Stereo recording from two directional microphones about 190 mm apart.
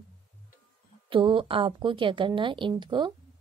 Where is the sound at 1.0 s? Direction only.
25° right (ahead or behind).